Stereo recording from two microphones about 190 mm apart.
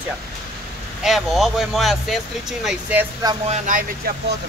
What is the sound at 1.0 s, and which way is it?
Speech, centre (ahead or behind).